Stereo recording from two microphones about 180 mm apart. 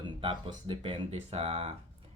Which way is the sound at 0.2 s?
25° right (ahead or behind).